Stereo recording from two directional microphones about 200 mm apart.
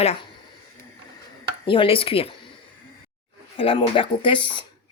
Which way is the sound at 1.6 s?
25° left (ahead or behind).